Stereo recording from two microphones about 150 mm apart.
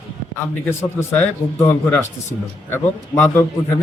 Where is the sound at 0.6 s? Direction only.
10° left (ahead or behind).